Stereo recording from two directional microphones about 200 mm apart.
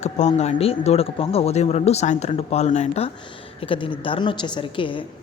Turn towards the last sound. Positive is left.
turn(degrees=25)  # may be behind; listen again after turning